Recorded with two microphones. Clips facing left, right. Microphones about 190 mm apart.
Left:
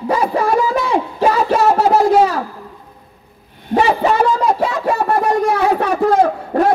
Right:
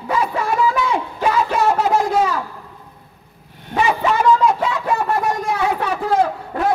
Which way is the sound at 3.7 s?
35° left (ahead or behind).